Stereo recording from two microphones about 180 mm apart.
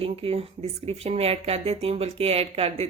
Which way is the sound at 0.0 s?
30° right (ahead or behind).